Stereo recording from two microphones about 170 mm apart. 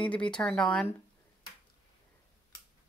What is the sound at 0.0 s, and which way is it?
Speech, 5° left (ahead or behind).